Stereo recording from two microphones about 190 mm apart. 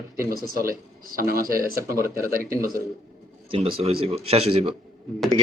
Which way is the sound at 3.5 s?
30° right (ahead or behind).